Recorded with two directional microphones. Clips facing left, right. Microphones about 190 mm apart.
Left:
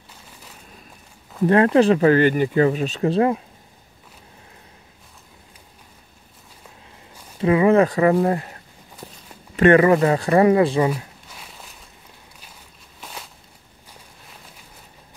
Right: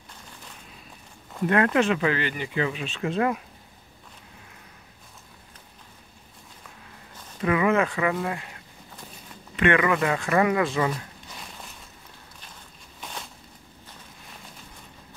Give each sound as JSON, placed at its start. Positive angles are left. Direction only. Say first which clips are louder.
{"t": 1.4, "sound": "speech", "louder": "left 7 dB", "side_deg": 30}
{"t": 7.3, "sound": "speech", "louder": "left 7 dB", "side_deg": 30}
{"t": 9.6, "sound": "speech", "louder": "left 8 dB", "side_deg": 40}
{"t": 11.2, "sound": "walk", "louder": "right 1 dB", "side_deg": 5}
{"t": 13.0, "sound": "a sound", "louder": "even", "side_deg": 0}